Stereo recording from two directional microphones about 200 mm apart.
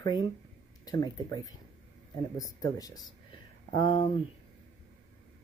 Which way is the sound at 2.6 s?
20° left (ahead or behind).